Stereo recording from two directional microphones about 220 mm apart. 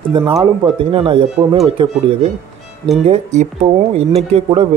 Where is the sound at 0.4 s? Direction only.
25° right (ahead or behind).